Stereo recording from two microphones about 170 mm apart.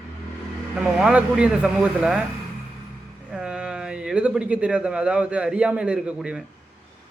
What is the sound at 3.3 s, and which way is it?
A man's voice, 5° right (ahead or behind).